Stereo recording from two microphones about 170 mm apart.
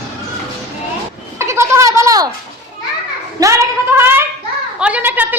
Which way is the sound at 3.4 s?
15° right (ahead or behind).